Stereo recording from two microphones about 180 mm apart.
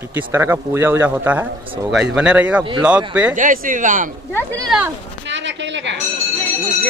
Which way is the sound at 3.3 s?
45° right (ahead or behind).